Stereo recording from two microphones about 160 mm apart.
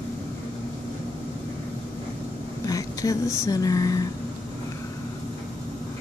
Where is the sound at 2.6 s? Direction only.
20° left (ahead or behind).